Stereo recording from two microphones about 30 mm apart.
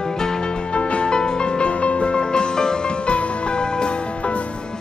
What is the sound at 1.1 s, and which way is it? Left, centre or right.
Music, left.